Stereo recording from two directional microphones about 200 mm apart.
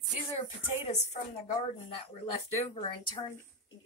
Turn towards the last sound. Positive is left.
turn(degrees=30)  # may be behind; listen again after turning